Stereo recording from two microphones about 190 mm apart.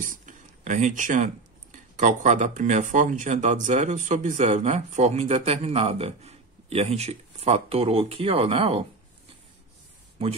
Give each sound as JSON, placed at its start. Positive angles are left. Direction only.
{"t": 0.0, "sound": "speech", "side_deg": -40}